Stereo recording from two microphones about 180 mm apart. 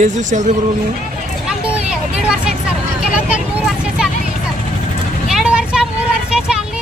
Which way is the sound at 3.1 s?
5° right (ahead or behind).